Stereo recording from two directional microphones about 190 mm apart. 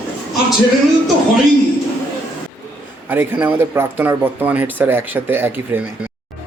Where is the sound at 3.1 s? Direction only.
10° right (ahead or behind).